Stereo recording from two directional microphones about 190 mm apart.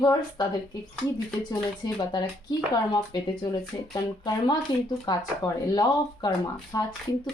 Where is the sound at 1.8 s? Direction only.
20° left (ahead or behind).